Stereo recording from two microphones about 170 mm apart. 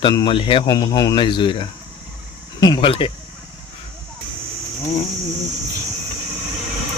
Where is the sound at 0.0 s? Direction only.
25° left (ahead or behind).